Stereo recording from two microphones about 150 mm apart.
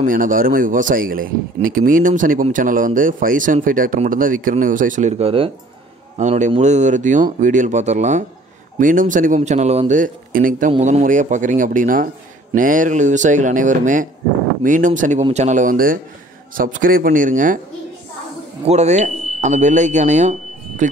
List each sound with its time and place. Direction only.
0.0 s speech: 65° right (ahead or behind); by 5.5 s 40° right (ahead or behind)
6.1 s a man's voice: 50° right (ahead or behind)
10.8 s speech: 55° right (ahead or behind)
18.7 s speech: 50° right (ahead or behind)